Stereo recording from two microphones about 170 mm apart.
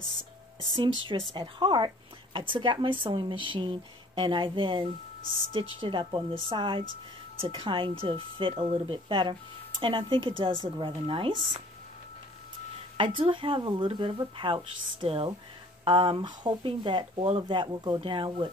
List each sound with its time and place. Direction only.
0.6 s speech: 30° right (ahead or behind)
5.2 s speech: 25° left (ahead or behind)
5.5 s speech: 30° right (ahead or behind)
12.9 s speech: 30° right (ahead or behind)